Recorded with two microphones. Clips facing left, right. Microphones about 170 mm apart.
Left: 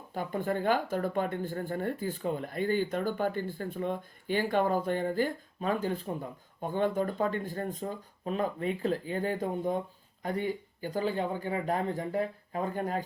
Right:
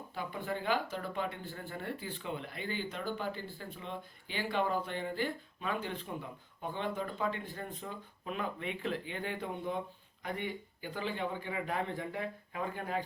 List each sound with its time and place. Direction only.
0.1 s speech: 45° left (ahead or behind)